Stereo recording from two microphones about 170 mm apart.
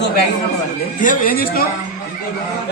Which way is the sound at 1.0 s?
50° left (ahead or behind).